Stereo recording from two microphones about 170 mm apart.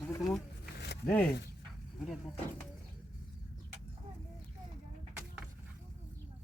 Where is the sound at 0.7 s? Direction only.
75° left (ahead or behind).